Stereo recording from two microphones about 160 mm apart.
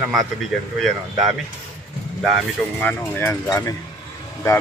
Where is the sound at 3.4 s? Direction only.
20° left (ahead or behind).